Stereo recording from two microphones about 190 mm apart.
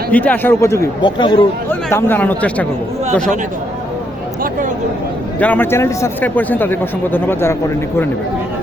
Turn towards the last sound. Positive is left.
turn(degrees=10)  # may be behind; listen again after turning